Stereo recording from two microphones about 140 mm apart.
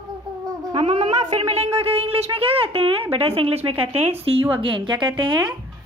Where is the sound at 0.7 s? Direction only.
40° right (ahead or behind).